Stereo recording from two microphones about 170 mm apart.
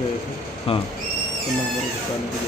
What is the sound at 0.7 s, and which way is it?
Speech, 35° left (ahead or behind).